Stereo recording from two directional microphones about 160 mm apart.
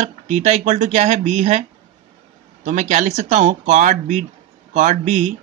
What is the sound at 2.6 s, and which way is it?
Speech, 50° right (ahead or behind).